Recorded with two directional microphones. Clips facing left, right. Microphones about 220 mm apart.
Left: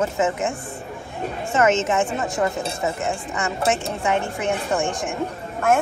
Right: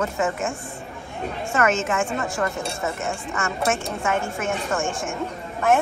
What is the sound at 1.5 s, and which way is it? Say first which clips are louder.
Speech: left 3 dB; 20° left (ahead or behind).